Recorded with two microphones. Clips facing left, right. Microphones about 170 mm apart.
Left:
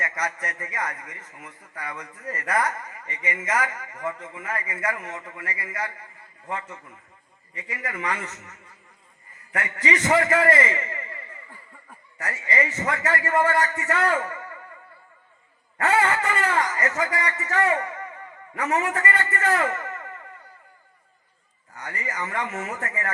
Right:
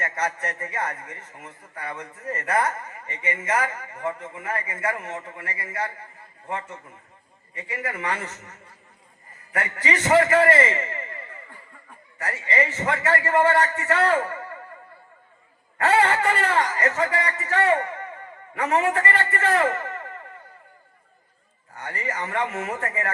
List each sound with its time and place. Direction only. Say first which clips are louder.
0.0 s a man's voice: right 2 dB; 30° right (ahead or behind)
12.2 s speech: right 2 dB; 30° right (ahead or behind)
15.8 s speech: right 2 dB; 35° right (ahead or behind)
21.8 s speech: right 2 dB; 30° right (ahead or behind)